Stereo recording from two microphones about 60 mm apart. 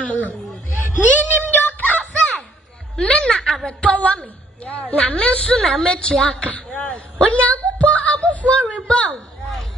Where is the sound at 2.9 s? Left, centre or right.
Centre.